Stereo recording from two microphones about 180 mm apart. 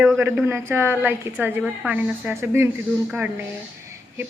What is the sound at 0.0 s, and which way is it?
A woman's voice, 10° right (ahead or behind).